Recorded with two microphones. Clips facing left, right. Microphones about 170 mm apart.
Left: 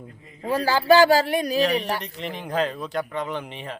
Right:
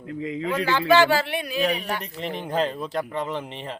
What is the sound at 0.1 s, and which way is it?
Speech, 90° right.